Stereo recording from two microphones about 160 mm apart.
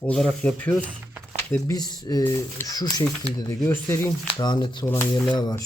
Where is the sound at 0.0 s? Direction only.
5° left (ahead or behind).